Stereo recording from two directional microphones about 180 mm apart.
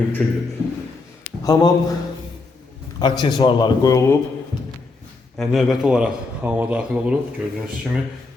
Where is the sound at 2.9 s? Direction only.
25° left (ahead or behind).